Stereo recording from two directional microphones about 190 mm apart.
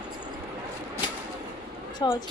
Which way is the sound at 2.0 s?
20° left (ahead or behind).